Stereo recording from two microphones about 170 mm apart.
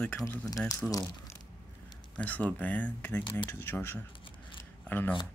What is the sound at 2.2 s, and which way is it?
Speech, 10° left (ahead or behind).